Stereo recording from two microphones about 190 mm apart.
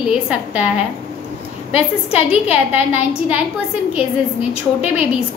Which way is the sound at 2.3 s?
5° right (ahead or behind).